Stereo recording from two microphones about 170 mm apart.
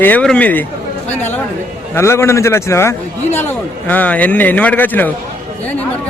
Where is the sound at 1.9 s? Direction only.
15° left (ahead or behind).